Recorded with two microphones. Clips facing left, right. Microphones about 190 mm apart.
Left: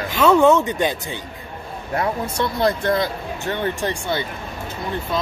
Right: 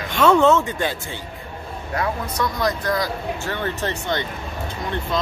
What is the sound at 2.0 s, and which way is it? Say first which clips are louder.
Speech: left 2 dB; 30° left (ahead or behind).